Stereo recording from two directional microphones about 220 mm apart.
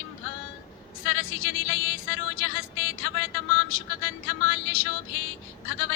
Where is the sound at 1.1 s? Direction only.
65° left (ahead or behind).